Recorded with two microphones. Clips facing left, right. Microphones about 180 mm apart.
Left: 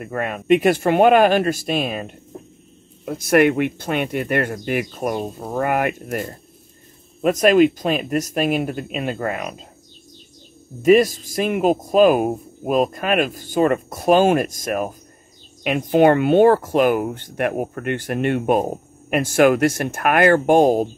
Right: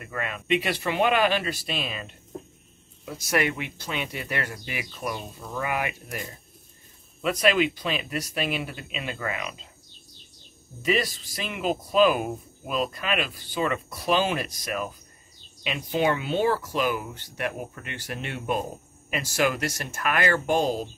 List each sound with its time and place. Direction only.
0.0 s speech: 50° left (ahead or behind)
10.8 s speech: 45° left (ahead or behind)